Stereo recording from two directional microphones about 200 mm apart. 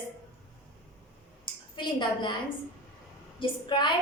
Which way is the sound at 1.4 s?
25° left (ahead or behind).